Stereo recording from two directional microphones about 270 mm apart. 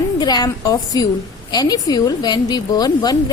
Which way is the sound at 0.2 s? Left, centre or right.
Centre.